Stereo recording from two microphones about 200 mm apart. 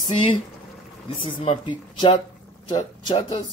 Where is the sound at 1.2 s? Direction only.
30° left (ahead or behind).